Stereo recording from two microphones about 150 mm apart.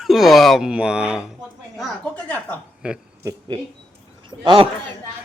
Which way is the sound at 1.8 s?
5° left (ahead or behind).